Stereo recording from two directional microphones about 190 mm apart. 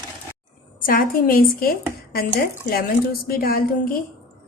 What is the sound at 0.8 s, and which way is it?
Speech, 50° left (ahead or behind).